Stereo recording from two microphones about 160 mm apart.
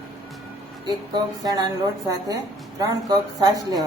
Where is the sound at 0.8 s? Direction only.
25° right (ahead or behind).